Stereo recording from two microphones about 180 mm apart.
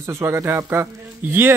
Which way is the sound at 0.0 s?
15° right (ahead or behind).